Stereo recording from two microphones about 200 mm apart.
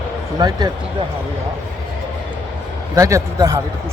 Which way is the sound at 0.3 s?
20° right (ahead or behind).